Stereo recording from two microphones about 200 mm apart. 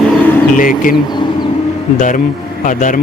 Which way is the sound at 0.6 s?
40° left (ahead or behind).